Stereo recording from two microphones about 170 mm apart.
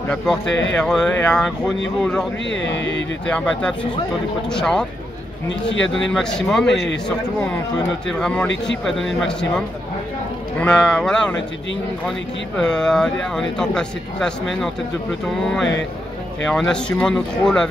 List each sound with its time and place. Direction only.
0.1 s speech: 5° left (ahead or behind)
2.5 s speech: 90° left
3.3 s speech: 5° left (ahead or behind)
5.5 s speech: 90° left
5.9 s speech: 5° left (ahead or behind)
8.1 s speech: 5° left (ahead or behind)
10.6 s speech: 5° left (ahead or behind)
12.5 s speech: 5° left (ahead or behind)